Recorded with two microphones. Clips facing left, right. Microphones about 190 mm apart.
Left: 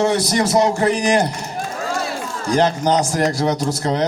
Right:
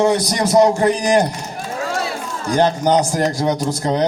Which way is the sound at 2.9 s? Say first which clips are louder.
Right 1 dB; 20° right (ahead or behind).